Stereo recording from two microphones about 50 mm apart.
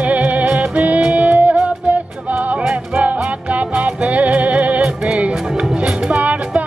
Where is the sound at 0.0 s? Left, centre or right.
Right.